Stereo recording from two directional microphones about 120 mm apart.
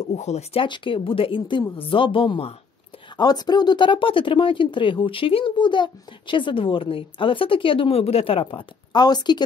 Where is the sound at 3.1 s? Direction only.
35° left (ahead or behind); by 8.6 s 50° left (ahead or behind).